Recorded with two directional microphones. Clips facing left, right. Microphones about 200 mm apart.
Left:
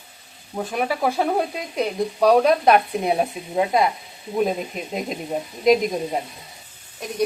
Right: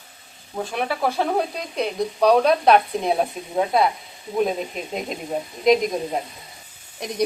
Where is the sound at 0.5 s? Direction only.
5° left (ahead or behind).